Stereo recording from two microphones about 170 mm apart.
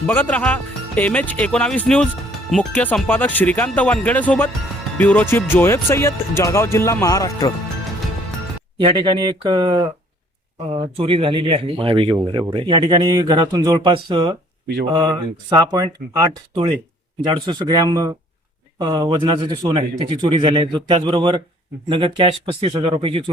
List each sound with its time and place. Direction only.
0.1 s speech: 10° left (ahead or behind)
8.8 s speech: 30° right (ahead or behind)